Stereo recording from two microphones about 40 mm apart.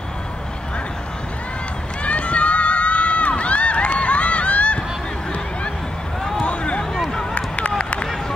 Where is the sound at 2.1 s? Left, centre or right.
Left.